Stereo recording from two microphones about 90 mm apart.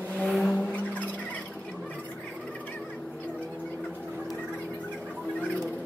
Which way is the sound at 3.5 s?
20° left (ahead or behind).